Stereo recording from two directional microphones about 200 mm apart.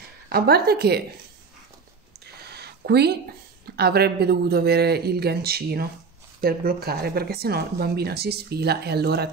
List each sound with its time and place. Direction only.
0.3 s speech: 50° right (ahead or behind)
2.3 s a sound: 55° right (ahead or behind)
3.7 s speech: 50° right (ahead or behind)